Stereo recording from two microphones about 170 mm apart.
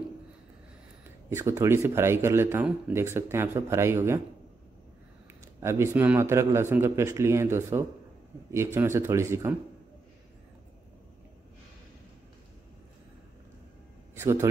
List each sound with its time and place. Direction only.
1.3 s speech: 15° right (ahead or behind)
5.4 s speech: 15° right (ahead or behind)
14.1 s a man's voice: 15° right (ahead or behind)